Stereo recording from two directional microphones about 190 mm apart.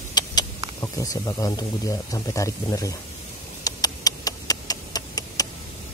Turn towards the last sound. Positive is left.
turn(degrees=20)  # may be behind; listen again after turning